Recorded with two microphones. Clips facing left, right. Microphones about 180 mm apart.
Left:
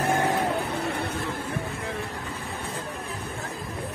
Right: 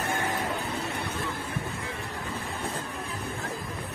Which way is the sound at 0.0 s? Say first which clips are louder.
Left 6 dB; 70° left (ahead or behind).